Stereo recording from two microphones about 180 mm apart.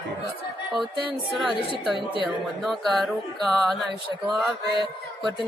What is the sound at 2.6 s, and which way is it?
Speech, centre (ahead or behind).